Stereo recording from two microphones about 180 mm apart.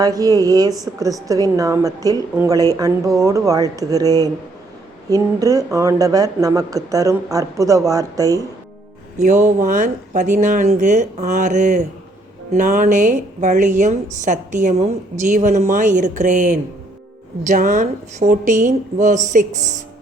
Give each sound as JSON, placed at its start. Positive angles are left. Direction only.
{"t": 0.0, "sound": "speech", "side_deg": -20}
{"t": 9.1, "sound": "a woman's voice", "side_deg": -40}